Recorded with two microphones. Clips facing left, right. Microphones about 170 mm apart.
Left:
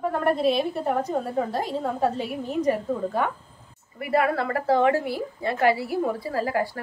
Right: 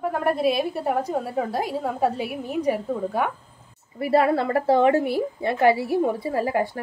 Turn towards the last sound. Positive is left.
turn(degrees=-20)  # may be behind; listen again after turning